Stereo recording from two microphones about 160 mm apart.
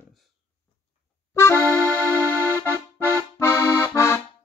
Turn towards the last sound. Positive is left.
turn(degrees=15)  # may be behind; listen again after turning